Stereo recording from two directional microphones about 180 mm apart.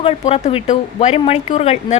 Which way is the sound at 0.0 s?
35° left (ahead or behind).